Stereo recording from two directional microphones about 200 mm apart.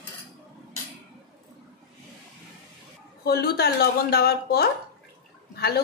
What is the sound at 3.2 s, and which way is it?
A woman's voice, 50° left (ahead or behind).